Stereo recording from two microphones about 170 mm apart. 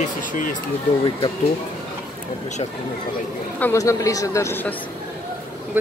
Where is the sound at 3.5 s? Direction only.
15° left (ahead or behind).